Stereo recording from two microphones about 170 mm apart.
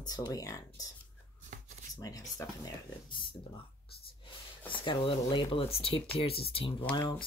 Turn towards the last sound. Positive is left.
turn(degrees=25)  # may be behind; listen again after turning